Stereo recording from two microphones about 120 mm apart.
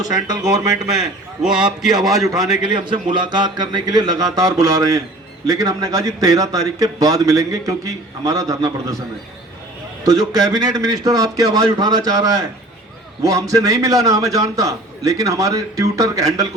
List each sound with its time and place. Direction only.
0.0 s a man's voice: 30° right (ahead or behind)
0.9 s a man's voice: 5° right (ahead or behind)
2.6 s a man's voice: 40° right (ahead or behind)
10.1 s a man's voice: 30° right (ahead or behind)